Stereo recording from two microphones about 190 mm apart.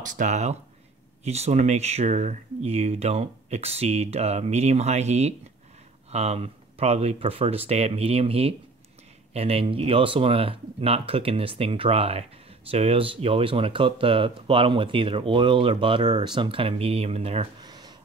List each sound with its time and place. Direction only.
0.0 s speech: 40° right (ahead or behind); by 17.9 s 20° right (ahead or behind)